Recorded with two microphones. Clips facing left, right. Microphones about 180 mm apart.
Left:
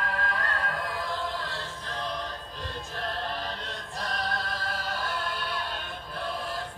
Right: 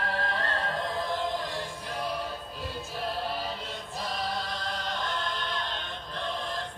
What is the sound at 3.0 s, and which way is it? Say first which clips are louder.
Choir: right 1 dB; 5° right (ahead or behind).